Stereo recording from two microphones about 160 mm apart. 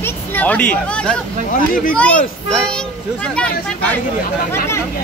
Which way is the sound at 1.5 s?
60° left (ahead or behind).